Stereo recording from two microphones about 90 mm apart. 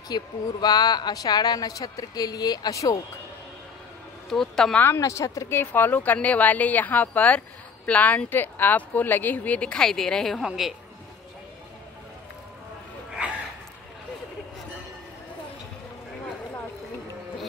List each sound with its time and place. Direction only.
0.1 s speech: 50° left (ahead or behind)
4.3 s a woman's voice: 5° left (ahead or behind)
4.7 s a woman's voice: 30° left (ahead or behind); by 10.7 s 5° right (ahead or behind)